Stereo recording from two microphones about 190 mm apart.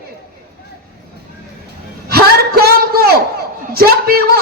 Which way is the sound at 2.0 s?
55° right (ahead or behind).